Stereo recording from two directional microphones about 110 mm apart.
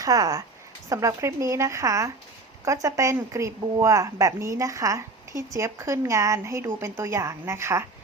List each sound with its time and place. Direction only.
0.0 s speech: 30° right (ahead or behind)